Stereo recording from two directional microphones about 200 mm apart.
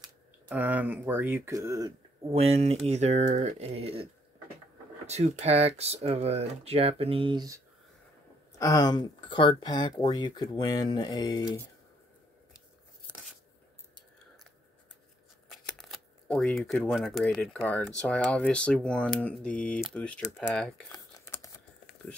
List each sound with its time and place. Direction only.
0.5 s speech: 10° right (ahead or behind)
8.5 s speech: 15° left (ahead or behind)
15.5 s speech: centre (ahead or behind)
20.9 s crumpling: 15° left (ahead or behind)